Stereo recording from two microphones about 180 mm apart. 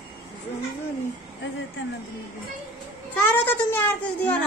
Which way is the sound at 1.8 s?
90° left.